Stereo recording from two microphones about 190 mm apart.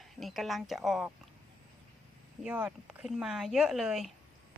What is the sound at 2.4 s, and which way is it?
Speech, 5° right (ahead or behind).